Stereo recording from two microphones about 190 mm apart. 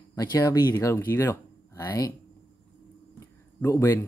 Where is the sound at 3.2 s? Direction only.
15° left (ahead or behind).